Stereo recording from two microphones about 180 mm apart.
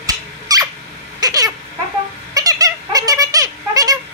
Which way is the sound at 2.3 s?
20° right (ahead or behind).